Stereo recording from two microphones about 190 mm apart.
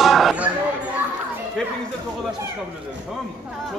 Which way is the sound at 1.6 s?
5° left (ahead or behind).